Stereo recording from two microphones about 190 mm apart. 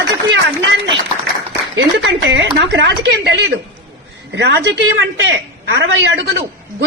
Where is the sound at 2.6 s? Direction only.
65° right (ahead or behind).